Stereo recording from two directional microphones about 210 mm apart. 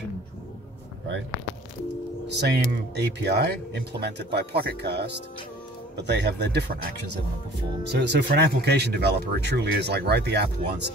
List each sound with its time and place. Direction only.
2.3 s speech: 55° right (ahead or behind)